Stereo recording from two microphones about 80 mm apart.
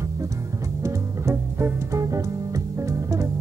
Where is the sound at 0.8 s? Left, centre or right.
Right.